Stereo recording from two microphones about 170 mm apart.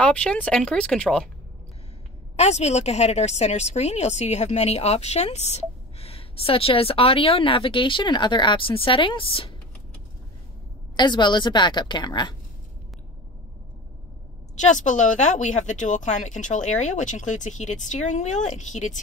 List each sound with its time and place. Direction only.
0.0 s speech: 5° left (ahead or behind)
2.3 s a woman's voice: 40° left (ahead or behind)
11.0 s a woman's voice: 25° left (ahead or behind)
14.6 s a woman's voice: 45° left (ahead or behind)